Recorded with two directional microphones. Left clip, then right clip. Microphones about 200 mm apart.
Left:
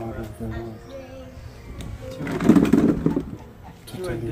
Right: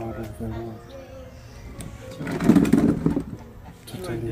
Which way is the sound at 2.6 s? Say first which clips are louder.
Left 2 dB; 35° right (ahead or behind).